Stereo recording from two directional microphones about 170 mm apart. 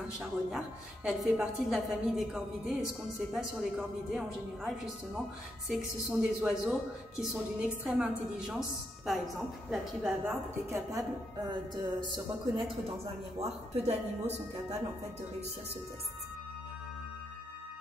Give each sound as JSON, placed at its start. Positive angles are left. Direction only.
{"t": 0.2, "sound": "a woman's voice", "side_deg": -5}
{"t": 10.7, "sound": "a woman's voice", "side_deg": -20}
{"t": 13.4, "sound": "speech", "side_deg": -40}